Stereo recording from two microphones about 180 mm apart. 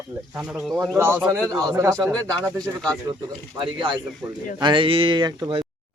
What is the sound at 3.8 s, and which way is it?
Speech, 25° right (ahead or behind).